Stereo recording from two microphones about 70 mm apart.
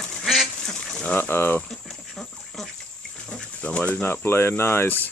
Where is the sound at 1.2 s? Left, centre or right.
Left.